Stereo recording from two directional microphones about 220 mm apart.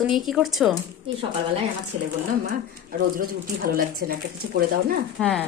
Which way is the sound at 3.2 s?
40° right (ahead or behind).